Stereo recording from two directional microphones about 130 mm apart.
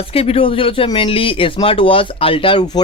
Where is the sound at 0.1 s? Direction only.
50° left (ahead or behind).